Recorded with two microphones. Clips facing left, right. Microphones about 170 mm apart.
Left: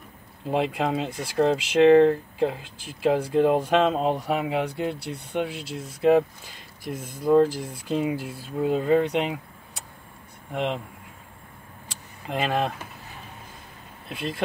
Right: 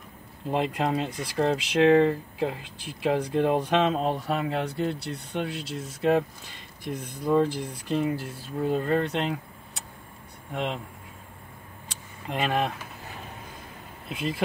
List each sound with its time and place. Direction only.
0.5 s speech: centre (ahead or behind)
5.1 s speech: 60° left (ahead or behind)
5.8 s speech: 5° left (ahead or behind)
10.5 s speech: centre (ahead or behind)
12.3 s speech: centre (ahead or behind)
14.0 s speech: centre (ahead or behind)